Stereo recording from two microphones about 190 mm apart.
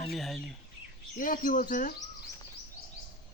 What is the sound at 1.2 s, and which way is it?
Speech, 45° left (ahead or behind).